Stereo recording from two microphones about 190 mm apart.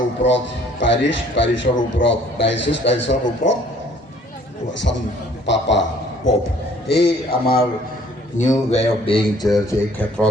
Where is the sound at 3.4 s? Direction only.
40° left (ahead or behind).